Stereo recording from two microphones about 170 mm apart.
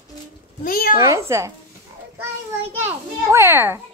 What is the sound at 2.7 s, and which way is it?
A child's voice, 15° right (ahead or behind).